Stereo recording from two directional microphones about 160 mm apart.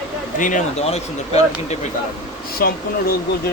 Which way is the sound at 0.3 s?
50° left (ahead or behind).